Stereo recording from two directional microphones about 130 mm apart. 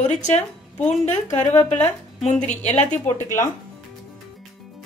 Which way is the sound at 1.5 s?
15° left (ahead or behind).